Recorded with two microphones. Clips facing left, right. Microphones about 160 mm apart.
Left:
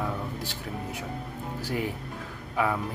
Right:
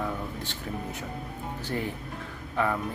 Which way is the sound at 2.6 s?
10° left (ahead or behind).